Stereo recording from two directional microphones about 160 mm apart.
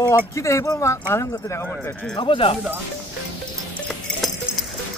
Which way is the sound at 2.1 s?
30° left (ahead or behind).